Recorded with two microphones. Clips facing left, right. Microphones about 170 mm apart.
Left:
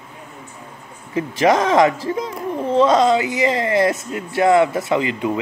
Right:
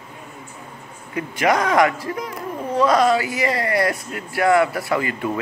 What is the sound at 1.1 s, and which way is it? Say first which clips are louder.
Speech: left 4 dB; 20° left (ahead or behind).